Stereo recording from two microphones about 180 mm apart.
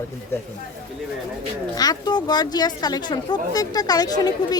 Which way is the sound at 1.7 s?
20° left (ahead or behind).